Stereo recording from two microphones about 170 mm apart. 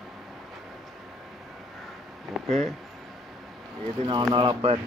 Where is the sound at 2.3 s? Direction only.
Centre (ahead or behind).